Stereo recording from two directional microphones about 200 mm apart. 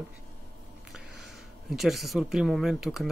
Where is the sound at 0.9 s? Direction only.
Centre (ahead or behind).